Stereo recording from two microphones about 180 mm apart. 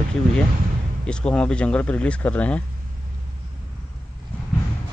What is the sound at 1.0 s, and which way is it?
Speech, 5° left (ahead or behind).